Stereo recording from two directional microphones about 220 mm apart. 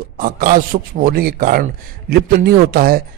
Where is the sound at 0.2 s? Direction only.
40° right (ahead or behind).